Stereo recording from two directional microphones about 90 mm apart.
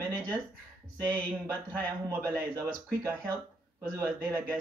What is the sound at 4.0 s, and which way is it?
Speech, 25° right (ahead or behind).